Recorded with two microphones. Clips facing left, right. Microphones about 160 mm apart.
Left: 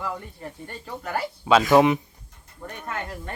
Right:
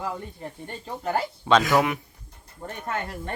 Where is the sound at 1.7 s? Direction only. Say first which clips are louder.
Left 5 dB; 20° left (ahead or behind).